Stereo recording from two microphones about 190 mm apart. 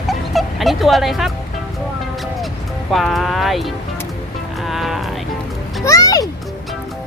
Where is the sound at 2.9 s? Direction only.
Centre (ahead or behind).